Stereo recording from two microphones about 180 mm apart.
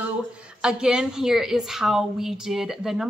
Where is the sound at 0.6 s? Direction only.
5° right (ahead or behind).